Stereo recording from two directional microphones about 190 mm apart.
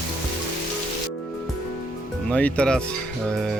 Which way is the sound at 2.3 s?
5° left (ahead or behind).